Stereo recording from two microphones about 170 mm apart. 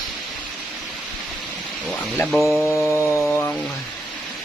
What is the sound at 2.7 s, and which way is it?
Chainsaw, 15° left (ahead or behind).